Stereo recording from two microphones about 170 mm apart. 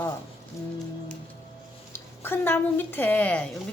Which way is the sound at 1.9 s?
15° left (ahead or behind).